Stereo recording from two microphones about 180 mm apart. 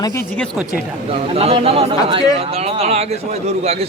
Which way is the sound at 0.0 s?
15° left (ahead or behind).